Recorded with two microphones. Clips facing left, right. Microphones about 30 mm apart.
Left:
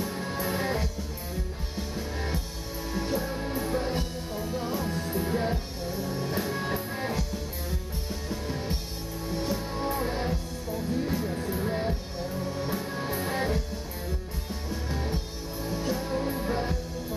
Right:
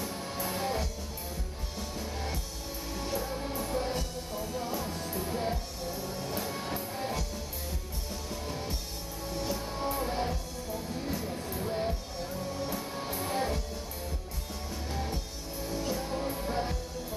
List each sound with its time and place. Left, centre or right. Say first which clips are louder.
0.0 s music: left 4 dB; centre
8.3 s music: left 4 dB; centre
14.7 s music: left 4 dB; centre